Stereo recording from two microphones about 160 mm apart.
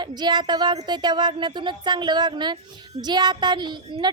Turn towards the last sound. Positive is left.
turn(degrees=-25)  # may be behind; listen again after turning